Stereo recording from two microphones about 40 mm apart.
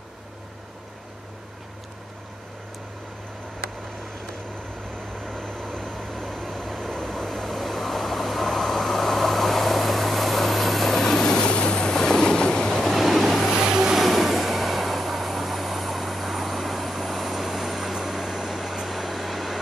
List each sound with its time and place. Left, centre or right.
5.2 s vehicle: centre
12.9 s vehicle: centre
13.5 s vehicle: centre
13.9 s vehicle: centre